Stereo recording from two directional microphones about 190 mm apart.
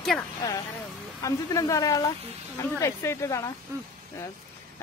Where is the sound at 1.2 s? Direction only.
15° left (ahead or behind).